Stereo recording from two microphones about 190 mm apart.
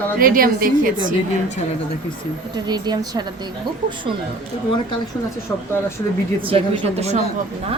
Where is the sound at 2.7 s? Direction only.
20° right (ahead or behind).